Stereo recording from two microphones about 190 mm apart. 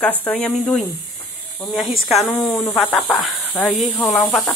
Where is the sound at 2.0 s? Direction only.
Centre (ahead or behind).